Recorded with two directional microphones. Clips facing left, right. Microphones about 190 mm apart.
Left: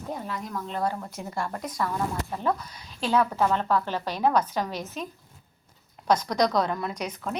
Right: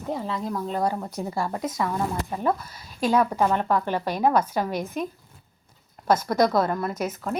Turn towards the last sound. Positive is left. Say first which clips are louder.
# right 4 dB
turn(degrees=-5)  # may be behind; listen again after turning